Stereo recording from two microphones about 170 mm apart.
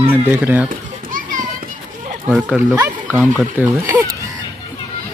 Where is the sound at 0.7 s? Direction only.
50° right (ahead or behind).